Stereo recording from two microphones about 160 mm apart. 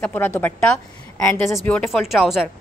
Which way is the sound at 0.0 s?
15° left (ahead or behind).